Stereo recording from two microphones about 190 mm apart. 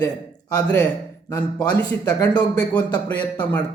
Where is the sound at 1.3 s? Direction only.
10° left (ahead or behind).